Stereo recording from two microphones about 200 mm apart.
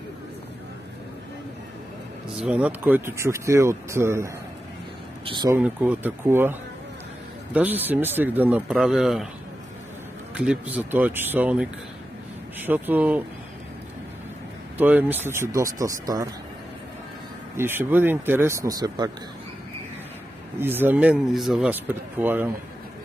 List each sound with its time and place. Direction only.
2.3 s speech: 5° right (ahead or behind); by 5.6 s 25° right (ahead or behind)
5.6 s speech: 10° right (ahead or behind)
10.3 s speech: 5° right (ahead or behind)
14.8 s speech: 10° right (ahead or behind)
17.6 s speech: 10° right (ahead or behind)
20.5 s speech: 10° right (ahead or behind)